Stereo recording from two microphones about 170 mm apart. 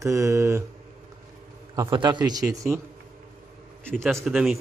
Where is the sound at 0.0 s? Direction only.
20° right (ahead or behind).